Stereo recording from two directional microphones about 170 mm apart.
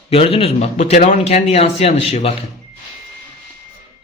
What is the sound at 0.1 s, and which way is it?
Speech, 35° left (ahead or behind).